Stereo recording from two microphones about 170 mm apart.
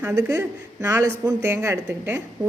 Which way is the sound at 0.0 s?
15° right (ahead or behind).